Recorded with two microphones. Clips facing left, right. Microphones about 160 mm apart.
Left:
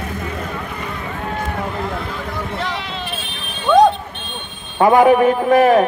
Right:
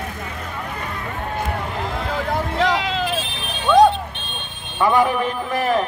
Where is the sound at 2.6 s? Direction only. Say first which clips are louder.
Right 6 dB; 90° right.